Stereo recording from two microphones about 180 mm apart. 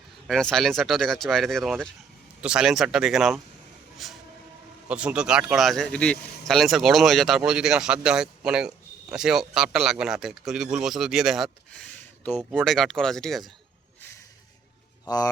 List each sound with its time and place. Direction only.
0.3 s speech: centre (ahead or behind)
15.0 s speech: 20° left (ahead or behind)